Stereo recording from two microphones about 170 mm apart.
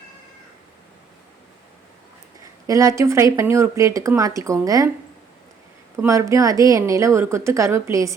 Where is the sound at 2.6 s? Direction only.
20° right (ahead or behind).